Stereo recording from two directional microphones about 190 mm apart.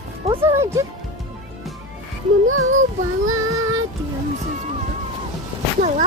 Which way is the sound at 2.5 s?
90° right.